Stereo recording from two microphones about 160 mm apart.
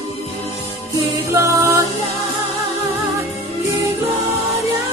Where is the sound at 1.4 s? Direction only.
20° right (ahead or behind).